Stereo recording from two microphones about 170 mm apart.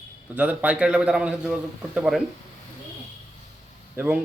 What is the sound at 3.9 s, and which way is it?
Speech, 10° right (ahead or behind).